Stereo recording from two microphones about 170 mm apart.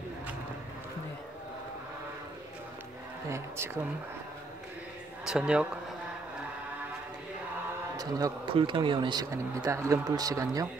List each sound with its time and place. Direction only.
3.3 s speech: 15° right (ahead or behind)
5.2 s speech: 5° right (ahead or behind)
8.0 s speech: 25° right (ahead or behind)